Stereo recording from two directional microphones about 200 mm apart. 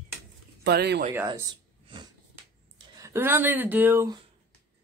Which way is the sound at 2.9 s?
15° right (ahead or behind).